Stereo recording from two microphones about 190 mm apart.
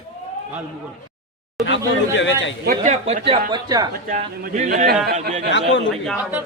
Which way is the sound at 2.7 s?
35° right (ahead or behind).